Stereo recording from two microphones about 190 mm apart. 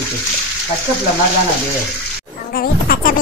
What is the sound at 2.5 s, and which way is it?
Music, 50° left (ahead or behind).